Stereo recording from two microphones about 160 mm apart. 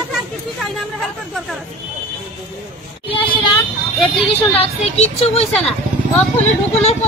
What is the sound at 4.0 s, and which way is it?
Speech, 35° left (ahead or behind).